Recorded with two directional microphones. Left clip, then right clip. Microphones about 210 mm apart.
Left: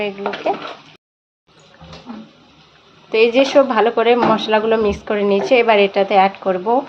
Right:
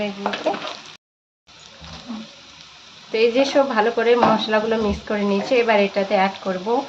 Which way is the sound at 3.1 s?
20° left (ahead or behind).